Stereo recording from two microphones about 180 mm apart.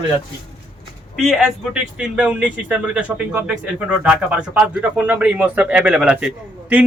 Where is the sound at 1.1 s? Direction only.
Centre (ahead or behind).